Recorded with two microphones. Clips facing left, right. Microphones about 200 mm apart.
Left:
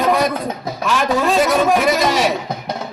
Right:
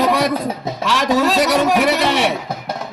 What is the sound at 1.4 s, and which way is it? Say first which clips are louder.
Speech: even; 75° right (ahead or behind).